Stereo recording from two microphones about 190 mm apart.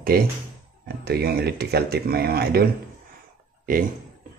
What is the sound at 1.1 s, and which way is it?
Speech, 55° right (ahead or behind).